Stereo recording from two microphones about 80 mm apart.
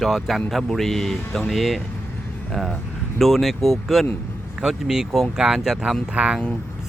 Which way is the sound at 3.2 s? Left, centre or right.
Centre.